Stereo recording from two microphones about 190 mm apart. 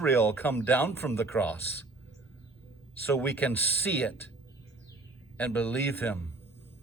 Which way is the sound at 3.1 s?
10° left (ahead or behind).